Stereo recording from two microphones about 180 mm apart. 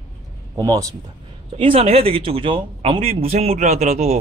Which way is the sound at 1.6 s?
30° right (ahead or behind).